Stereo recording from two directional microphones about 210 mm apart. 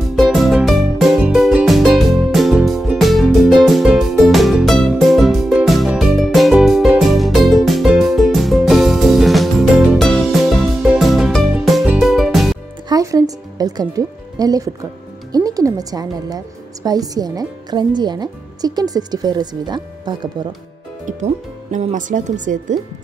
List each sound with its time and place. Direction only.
0.1 s music: centre (ahead or behind)
12.8 s music: 15° right (ahead or behind)
15.3 s speech: 15° right (ahead or behind)
21.2 s speech: 35° right (ahead or behind)